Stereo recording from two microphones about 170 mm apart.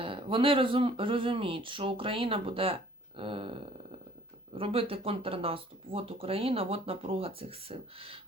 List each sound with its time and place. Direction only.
0.0 s speech: 30° right (ahead or behind)